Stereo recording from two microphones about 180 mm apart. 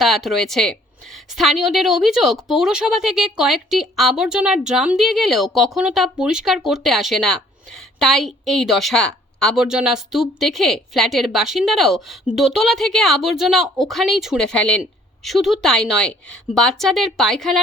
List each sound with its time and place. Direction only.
0.0 s a woman's voice: centre (ahead or behind)